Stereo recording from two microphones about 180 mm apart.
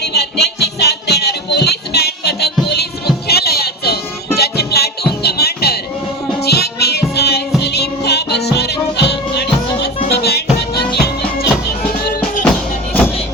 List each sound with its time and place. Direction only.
0.0 s music: 65° left (ahead or behind)